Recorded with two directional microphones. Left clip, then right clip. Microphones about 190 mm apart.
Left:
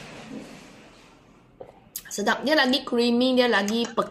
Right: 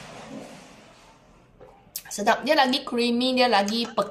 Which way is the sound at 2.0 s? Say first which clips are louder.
Right 2 dB; 20° right (ahead or behind).